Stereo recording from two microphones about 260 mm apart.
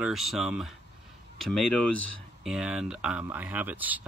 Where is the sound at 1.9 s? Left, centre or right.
Left.